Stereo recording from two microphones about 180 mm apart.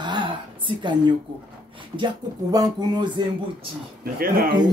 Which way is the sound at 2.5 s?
20° right (ahead or behind).